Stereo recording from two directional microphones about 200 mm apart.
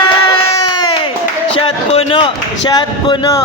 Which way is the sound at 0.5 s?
20° left (ahead or behind).